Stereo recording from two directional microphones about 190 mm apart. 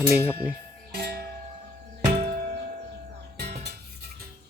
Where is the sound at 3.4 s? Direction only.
60° right (ahead or behind).